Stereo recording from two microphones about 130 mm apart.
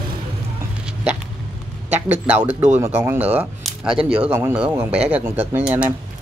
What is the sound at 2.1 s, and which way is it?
Speech, 15° right (ahead or behind).